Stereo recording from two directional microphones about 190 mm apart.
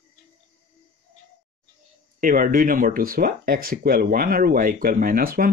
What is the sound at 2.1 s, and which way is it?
Speech, 45° right (ahead or behind).